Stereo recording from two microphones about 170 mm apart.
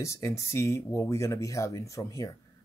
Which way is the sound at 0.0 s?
15° left (ahead or behind).